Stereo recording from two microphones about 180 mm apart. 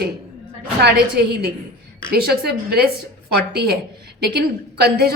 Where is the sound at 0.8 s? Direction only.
65° right (ahead or behind).